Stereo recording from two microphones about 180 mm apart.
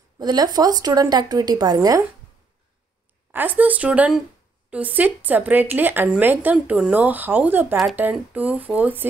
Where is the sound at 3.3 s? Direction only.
10° right (ahead or behind).